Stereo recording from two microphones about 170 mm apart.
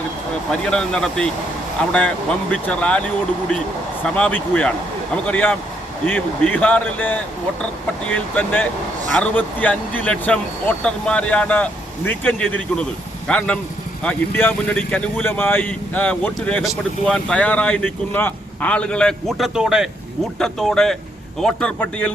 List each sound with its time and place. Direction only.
0.6 s speech: 5° left (ahead or behind)
4.0 s speech: 5° left (ahead or behind)